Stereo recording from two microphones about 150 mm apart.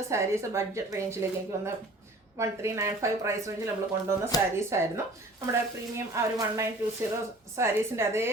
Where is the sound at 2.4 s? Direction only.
20° right (ahead or behind).